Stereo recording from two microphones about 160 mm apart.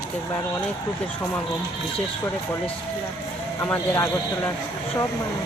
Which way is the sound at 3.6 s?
15° left (ahead or behind).